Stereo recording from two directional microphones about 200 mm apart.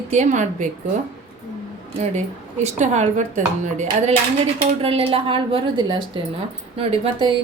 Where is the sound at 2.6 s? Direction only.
35° right (ahead or behind).